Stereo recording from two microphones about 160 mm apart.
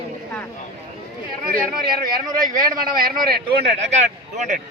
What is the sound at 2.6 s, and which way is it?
Speech, 25° right (ahead or behind).